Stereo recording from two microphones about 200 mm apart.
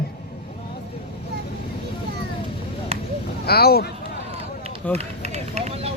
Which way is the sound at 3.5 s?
50° left (ahead or behind).